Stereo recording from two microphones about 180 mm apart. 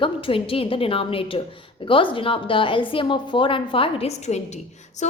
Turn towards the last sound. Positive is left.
turn(degrees=40)  # may be behind; listen again after turning